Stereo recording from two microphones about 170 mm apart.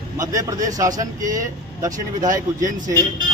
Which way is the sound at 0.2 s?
20° right (ahead or behind).